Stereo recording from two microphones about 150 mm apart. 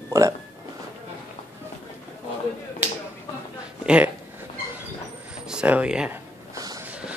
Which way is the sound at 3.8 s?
10° right (ahead or behind).